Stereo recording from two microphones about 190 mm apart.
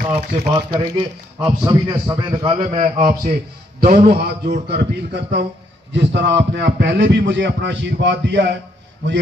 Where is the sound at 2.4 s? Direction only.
35° right (ahead or behind).